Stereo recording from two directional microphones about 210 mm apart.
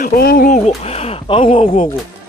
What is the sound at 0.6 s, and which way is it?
Speech, 30° left (ahead or behind).